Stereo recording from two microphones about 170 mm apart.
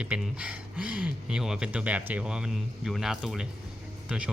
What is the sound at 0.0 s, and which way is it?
Speech, 5° right (ahead or behind).